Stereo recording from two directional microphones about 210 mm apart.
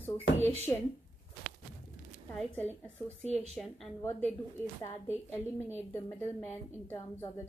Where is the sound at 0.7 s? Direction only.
15° left (ahead or behind).